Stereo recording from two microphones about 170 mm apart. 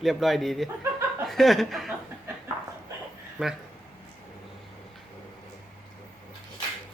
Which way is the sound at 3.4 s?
5° right (ahead or behind).